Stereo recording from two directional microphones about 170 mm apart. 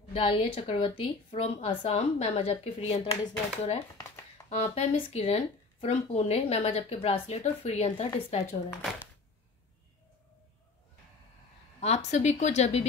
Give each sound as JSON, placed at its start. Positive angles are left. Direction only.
{"t": 0.1, "sound": "speech", "side_deg": 35}
{"t": 4.5, "sound": "speech", "side_deg": 40}
{"t": 11.8, "sound": "speech", "side_deg": 40}